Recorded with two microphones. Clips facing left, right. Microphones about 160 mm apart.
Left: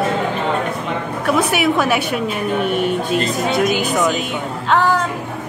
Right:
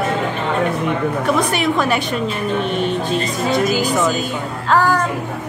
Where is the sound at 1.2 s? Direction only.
5° left (ahead or behind).